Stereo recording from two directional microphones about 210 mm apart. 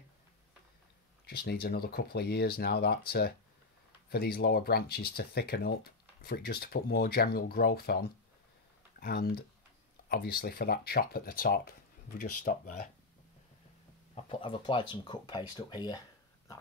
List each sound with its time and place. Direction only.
1.2 s speech: 50° left (ahead or behind)
9.0 s speech: 45° left (ahead or behind)
14.1 s speech: 25° left (ahead or behind)